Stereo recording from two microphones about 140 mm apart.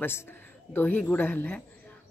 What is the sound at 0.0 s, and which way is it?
A woman's voice, 15° left (ahead or behind).